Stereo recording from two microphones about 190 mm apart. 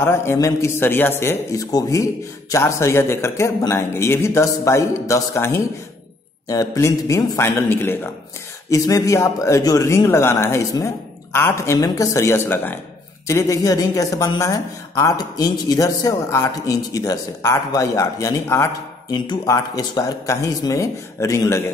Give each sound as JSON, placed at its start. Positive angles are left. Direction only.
{"t": 0.0, "sound": "speech", "side_deg": 15}